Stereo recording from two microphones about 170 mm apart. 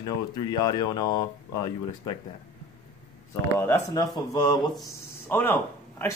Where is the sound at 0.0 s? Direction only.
25° left (ahead or behind).